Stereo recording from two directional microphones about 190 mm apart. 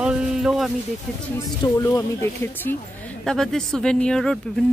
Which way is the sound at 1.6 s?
20° left (ahead or behind).